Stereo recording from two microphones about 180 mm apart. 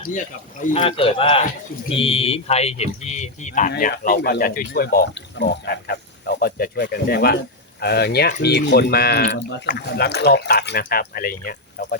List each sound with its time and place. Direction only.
0.8 s speech: 30° left (ahead or behind); by 3.9 s 50° left (ahead or behind)
3.9 s speech: 60° left (ahead or behind)